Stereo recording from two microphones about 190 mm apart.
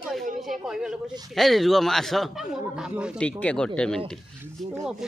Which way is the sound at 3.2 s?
5° left (ahead or behind).